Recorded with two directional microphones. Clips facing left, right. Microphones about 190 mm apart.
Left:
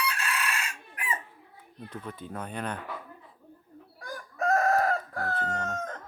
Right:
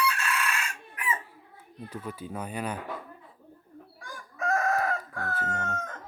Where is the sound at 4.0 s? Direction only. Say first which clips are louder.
Left 4 dB; 40° left (ahead or behind).